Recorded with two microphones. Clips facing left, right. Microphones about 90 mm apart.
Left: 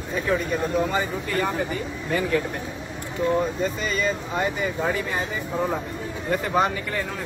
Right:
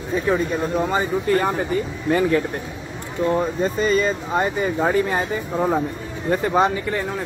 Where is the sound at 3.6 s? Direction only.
40° right (ahead or behind).